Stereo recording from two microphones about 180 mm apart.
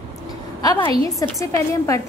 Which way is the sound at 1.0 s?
20° left (ahead or behind).